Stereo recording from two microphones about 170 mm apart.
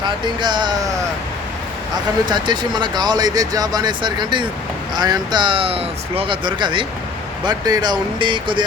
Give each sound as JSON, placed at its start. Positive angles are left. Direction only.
{"t": 0.0, "sound": "speech", "side_deg": -25}
{"t": 2.3, "sound": "speech", "side_deg": -25}